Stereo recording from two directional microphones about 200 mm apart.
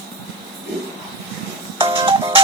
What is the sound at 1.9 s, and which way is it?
Music, 25° right (ahead or behind).